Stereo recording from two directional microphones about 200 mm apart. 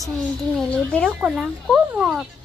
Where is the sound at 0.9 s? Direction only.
Centre (ahead or behind).